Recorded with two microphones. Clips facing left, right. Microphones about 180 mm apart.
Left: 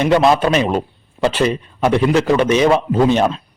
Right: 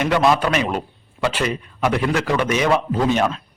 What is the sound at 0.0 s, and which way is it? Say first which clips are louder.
A man's voice: left 4 dB; 25° left (ahead or behind).